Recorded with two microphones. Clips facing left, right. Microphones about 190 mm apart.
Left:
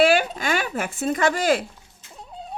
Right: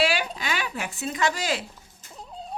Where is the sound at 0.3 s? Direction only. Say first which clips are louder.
Left 6 dB; 50° left (ahead or behind).